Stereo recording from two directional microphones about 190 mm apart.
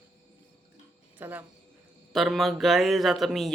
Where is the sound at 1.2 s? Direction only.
10° right (ahead or behind).